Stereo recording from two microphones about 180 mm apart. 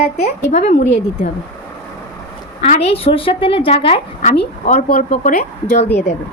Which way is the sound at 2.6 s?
40° left (ahead or behind).